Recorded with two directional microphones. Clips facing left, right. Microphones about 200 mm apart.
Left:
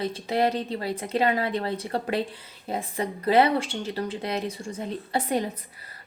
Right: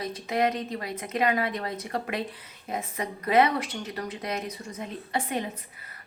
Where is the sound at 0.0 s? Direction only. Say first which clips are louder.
Left 2 dB; 30° left (ahead or behind).